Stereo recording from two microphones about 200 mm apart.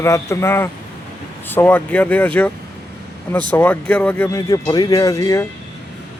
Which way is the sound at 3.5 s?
10° left (ahead or behind).